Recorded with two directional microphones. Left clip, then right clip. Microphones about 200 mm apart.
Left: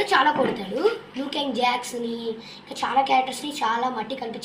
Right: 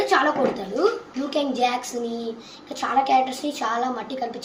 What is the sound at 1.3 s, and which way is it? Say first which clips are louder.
A woman's voice: right 1 dB; 20° right (ahead or behind).